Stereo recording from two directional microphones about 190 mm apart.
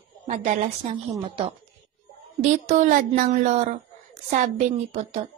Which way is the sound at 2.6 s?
40° right (ahead or behind).